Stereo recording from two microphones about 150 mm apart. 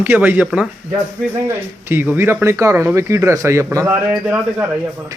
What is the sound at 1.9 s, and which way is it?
Speech, 15° right (ahead or behind).